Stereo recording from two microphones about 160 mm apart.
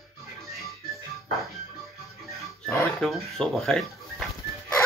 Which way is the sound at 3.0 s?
Centre (ahead or behind).